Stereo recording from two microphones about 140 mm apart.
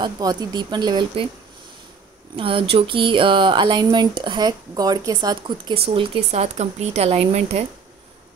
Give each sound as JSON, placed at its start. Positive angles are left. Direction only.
{"t": 0.0, "sound": "speech", "side_deg": -30}
{"t": 2.3, "sound": "speech", "side_deg": -40}
{"t": 5.8, "sound": "speech", "side_deg": -45}